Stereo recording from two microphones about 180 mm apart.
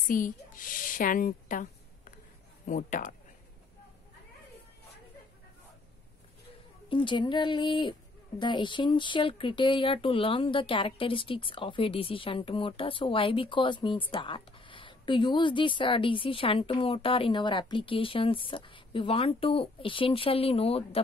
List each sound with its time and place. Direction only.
0.1 s a man's voice: 50° left (ahead or behind)
6.9 s speech: 25° left (ahead or behind)